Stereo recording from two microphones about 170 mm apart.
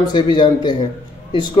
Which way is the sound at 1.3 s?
25° left (ahead or behind).